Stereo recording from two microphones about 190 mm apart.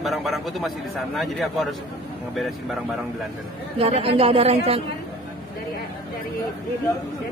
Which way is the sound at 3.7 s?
30° right (ahead or behind).